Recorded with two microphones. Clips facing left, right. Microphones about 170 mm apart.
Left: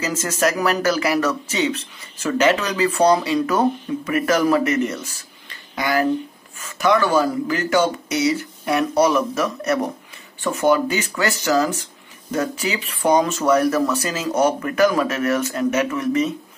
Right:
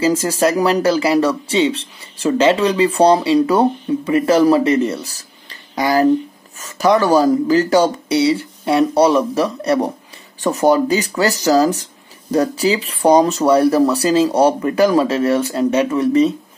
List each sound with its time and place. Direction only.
0.0 s speech: 30° right (ahead or behind)